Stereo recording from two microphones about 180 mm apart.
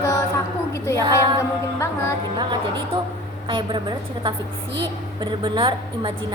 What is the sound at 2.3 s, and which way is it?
A woman's voice, 25° right (ahead or behind).